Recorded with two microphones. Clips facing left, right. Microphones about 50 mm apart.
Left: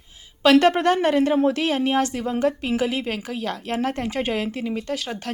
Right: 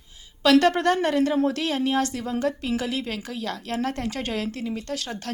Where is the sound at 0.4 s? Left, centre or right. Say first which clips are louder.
Left 2 dB; left.